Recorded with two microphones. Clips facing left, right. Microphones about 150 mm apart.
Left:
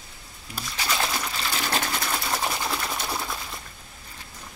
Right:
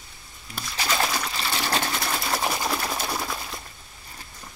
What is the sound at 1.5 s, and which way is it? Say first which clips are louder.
Sewing machine: right 2 dB; 35° right (ahead or behind).